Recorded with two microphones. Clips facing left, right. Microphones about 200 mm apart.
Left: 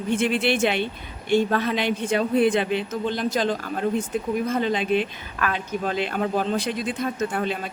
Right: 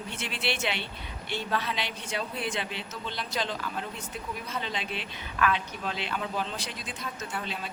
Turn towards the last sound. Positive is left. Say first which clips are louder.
# left 11 dB
turn(degrees=55)  # may be behind; listen again after turning